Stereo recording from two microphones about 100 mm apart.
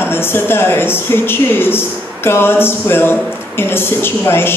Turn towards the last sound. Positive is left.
turn(degrees=20)  # may be behind; listen again after turning